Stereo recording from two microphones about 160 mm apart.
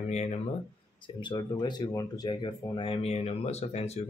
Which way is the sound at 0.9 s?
30° left (ahead or behind).